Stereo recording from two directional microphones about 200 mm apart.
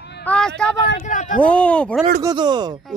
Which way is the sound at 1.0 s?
40° left (ahead or behind).